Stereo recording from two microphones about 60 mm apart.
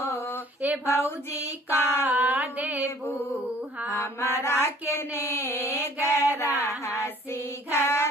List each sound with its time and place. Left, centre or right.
0.0 s female singing: left
0.9 s mantra: left
2.0 s carnatic music: right
3.9 s mantra: left
6.3 s child singing: left